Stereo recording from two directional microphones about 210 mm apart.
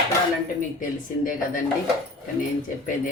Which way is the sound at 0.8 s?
40° left (ahead or behind).